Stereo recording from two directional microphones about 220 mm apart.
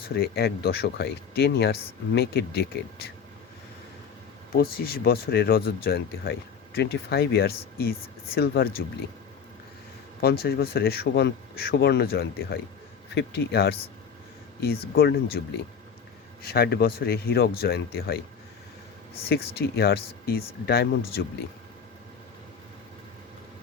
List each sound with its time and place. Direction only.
0.1 s speech: 45° left (ahead or behind)
4.5 s speech: 45° left (ahead or behind)
10.2 s speech: 45° left (ahead or behind)
16.4 s speech: 45° left (ahead or behind)
19.3 s speech: 45° left (ahead or behind)